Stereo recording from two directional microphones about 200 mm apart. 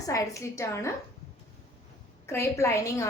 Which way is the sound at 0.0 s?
15° left (ahead or behind).